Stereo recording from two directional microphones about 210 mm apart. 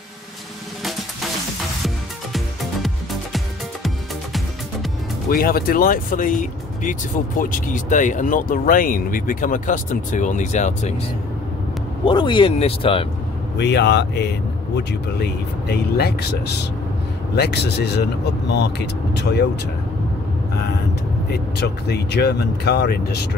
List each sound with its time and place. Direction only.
2.3 s music: centre (ahead or behind)
5.3 s speech: 45° left (ahead or behind)
12.0 s speech: 20° left (ahead or behind)
13.6 s speech: 55° left (ahead or behind)
21.3 s speech: 50° left (ahead or behind)